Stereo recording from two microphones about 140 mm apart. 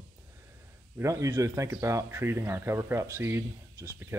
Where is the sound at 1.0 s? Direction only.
20° right (ahead or behind).